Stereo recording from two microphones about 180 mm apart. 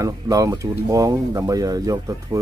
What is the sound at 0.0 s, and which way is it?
Speech, 20° right (ahead or behind).